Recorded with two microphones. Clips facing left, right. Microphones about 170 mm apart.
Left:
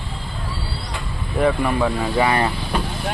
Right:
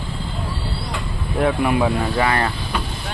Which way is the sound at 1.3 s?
5° right (ahead or behind).